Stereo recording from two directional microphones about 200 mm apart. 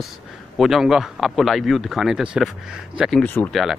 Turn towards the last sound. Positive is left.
turn(degrees=0)  # may be behind; listen again after turning